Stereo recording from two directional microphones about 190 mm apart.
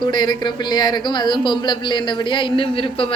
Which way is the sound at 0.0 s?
20° left (ahead or behind).